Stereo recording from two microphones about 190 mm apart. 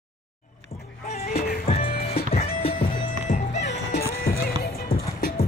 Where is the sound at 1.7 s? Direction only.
35° left (ahead or behind).